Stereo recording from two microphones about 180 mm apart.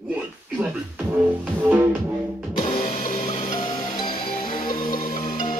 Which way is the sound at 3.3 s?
25° left (ahead or behind).